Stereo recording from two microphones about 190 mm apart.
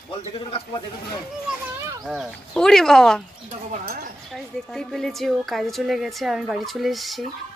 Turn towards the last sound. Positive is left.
turn(degrees=0)  # may be behind; listen again after turning